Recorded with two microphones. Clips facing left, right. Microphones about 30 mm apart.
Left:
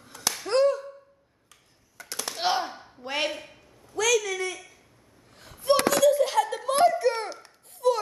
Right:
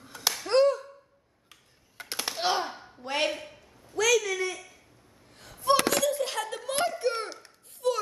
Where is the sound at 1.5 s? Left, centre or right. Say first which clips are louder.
Right 2 dB; right.